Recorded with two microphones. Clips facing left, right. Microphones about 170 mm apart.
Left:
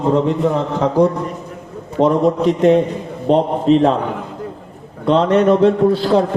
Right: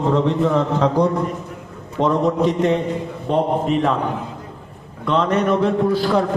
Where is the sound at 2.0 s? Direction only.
15° left (ahead or behind).